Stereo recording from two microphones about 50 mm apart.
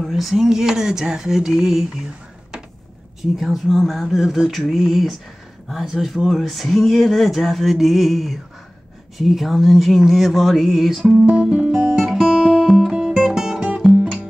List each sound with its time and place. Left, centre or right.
0.0 s speech: centre
3.2 s speech: centre
11.4 s music: centre
12.3 s guitar: right
13.2 s music: centre